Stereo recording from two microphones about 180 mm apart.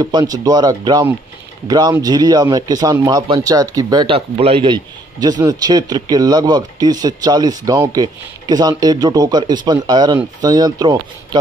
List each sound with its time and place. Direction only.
0.0 s a man's voice: 20° right (ahead or behind)